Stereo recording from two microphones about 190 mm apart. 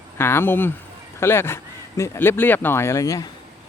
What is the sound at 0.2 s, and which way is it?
Speech, 10° left (ahead or behind).